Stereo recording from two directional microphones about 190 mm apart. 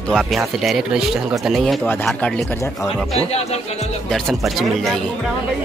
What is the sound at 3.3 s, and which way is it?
Music, 35° left (ahead or behind).